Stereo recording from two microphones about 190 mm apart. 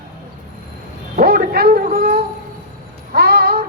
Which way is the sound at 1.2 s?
55° right (ahead or behind).